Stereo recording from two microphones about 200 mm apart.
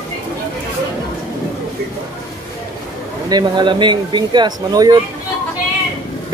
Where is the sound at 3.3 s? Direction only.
20° right (ahead or behind).